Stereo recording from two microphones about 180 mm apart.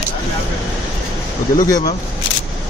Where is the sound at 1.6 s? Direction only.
20° left (ahead or behind).